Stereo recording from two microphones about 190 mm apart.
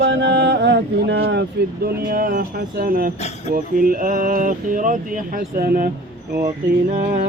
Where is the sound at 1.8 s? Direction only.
50° right (ahead or behind).